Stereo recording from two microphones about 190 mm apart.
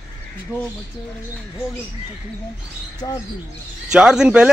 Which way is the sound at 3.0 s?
20° left (ahead or behind).